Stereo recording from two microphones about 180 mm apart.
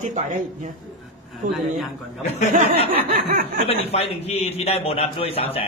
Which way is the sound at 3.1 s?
50° right (ahead or behind).